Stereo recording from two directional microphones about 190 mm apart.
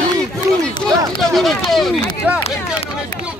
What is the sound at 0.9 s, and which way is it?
Speech, centre (ahead or behind).